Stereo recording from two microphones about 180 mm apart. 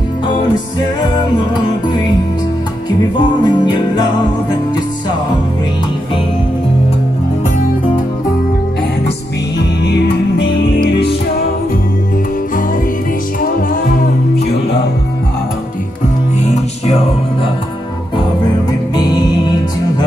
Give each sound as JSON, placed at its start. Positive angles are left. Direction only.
{"t": 3.0, "sound": "music", "side_deg": 25}
{"t": 9.6, "sound": "music", "side_deg": 70}
{"t": 13.4, "sound": "music", "side_deg": 50}
{"t": 16.3, "sound": "music", "side_deg": 35}
{"t": 18.7, "sound": "music", "side_deg": 20}